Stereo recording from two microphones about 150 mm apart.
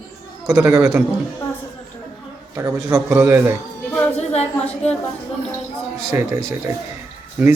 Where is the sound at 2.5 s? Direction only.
15° right (ahead or behind).